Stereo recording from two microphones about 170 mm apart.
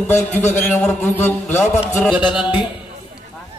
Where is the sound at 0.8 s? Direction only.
10° left (ahead or behind).